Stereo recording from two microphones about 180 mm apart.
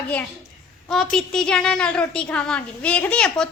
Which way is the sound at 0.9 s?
5° left (ahead or behind).